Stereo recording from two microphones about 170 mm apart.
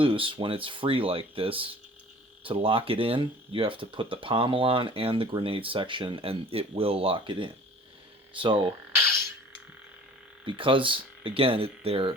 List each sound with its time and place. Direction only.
0.0 s speech: 30° right (ahead or behind)
10.4 s speech: 30° right (ahead or behind)